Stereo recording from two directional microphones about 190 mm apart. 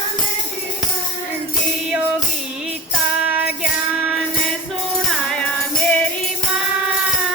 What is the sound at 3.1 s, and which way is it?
Music, 5° right (ahead or behind).